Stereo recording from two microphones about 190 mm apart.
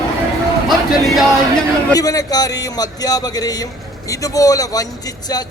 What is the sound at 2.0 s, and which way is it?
Speech, 20° left (ahead or behind).